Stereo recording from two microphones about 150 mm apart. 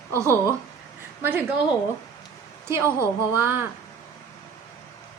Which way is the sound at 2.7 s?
15° right (ahead or behind).